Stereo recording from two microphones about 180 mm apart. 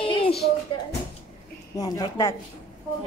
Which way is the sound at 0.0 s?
30° left (ahead or behind).